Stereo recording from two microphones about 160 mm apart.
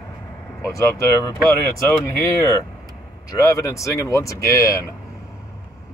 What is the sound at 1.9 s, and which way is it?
Speech, 20° left (ahead or behind).